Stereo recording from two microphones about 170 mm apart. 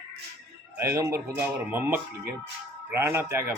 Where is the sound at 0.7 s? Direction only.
15° right (ahead or behind).